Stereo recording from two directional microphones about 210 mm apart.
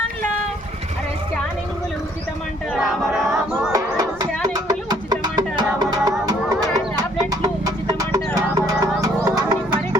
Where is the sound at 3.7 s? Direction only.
20° right (ahead or behind).